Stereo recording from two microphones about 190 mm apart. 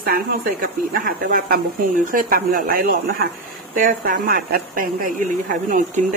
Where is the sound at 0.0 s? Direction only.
50° right (ahead or behind).